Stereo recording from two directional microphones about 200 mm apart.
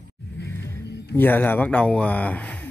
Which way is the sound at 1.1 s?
10° left (ahead or behind).